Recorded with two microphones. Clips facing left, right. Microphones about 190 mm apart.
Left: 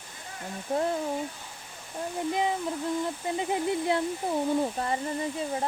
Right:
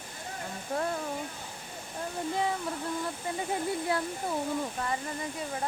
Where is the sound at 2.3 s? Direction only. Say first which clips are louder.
Left 2 dB; 15° left (ahead or behind).